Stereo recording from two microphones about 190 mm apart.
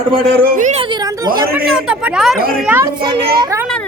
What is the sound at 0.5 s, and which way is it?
Speech, 40° right (ahead or behind).